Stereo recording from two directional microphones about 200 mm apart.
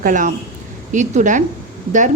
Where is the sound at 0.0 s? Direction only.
40° right (ahead or behind).